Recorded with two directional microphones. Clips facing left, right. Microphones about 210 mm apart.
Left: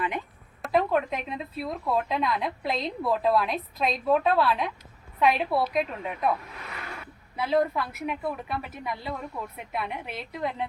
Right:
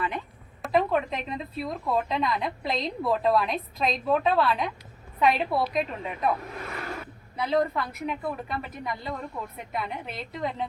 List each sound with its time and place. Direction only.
0.6 s a woman's voice: centre (ahead or behind)
6.7 s a sound: 45° right (ahead or behind)
7.3 s a woman's voice: 5° left (ahead or behind)